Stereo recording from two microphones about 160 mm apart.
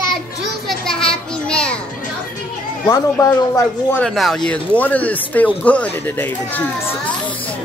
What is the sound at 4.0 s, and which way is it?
Speech, centre (ahead or behind).